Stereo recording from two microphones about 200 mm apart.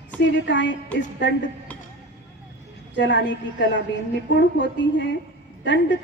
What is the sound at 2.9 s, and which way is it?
A woman's voice, 65° left (ahead or behind).